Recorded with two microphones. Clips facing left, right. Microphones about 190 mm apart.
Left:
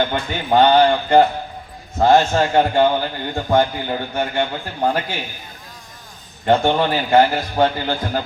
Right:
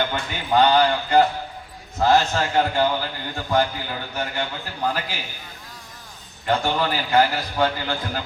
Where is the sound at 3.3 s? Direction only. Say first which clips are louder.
Left 5 dB; 25° left (ahead or behind).